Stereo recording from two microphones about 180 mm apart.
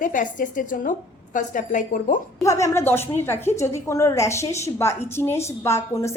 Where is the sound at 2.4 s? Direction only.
15° left (ahead or behind).